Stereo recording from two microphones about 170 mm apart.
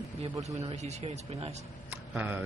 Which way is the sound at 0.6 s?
40° right (ahead or behind).